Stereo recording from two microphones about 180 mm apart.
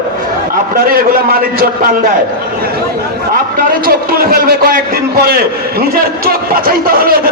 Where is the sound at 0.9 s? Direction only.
55° right (ahead or behind).